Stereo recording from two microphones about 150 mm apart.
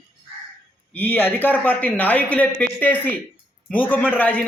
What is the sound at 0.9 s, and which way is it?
A man's voice, 10° left (ahead or behind).